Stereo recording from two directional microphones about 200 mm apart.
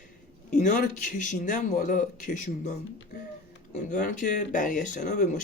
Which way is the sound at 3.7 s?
40° left (ahead or behind).